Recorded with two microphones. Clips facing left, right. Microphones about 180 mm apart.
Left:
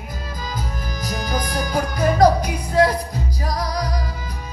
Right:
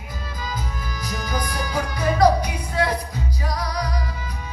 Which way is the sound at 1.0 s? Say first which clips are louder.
Left 3 dB; 40° left (ahead or behind).